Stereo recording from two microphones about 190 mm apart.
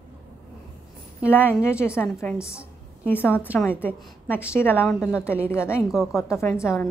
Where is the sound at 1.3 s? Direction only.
10° left (ahead or behind).